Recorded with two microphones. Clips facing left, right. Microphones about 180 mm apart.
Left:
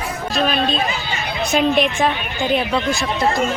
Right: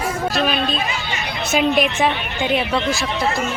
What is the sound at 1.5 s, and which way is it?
Speech, 5° right (ahead or behind).